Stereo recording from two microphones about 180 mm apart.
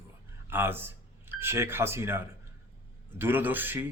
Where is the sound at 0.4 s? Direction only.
10° right (ahead or behind).